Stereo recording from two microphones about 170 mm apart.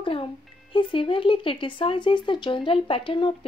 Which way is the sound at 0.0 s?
30° left (ahead or behind).